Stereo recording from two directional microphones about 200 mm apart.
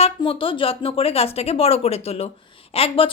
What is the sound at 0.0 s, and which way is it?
A woman's voice, 25° left (ahead or behind).